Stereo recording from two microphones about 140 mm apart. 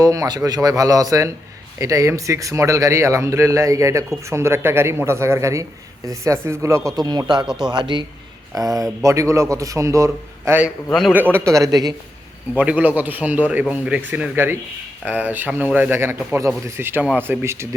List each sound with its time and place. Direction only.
0.0 s speech: 25° right (ahead or behind)
7.4 s speech: 5° right (ahead or behind)
7.7 s speech: 35° right (ahead or behind)
12.5 s a man's voice: 10° right (ahead or behind)